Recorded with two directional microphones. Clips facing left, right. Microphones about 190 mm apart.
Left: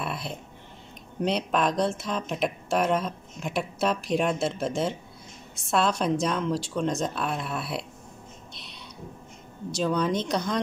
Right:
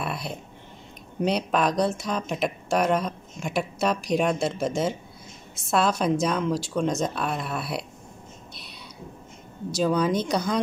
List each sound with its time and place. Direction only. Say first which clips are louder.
0.0 s a sound: right 2 dB; centre (ahead or behind)
1.2 s speech: right 2 dB; centre (ahead or behind)
9.7 s speech: right 3 dB; 5° right (ahead or behind)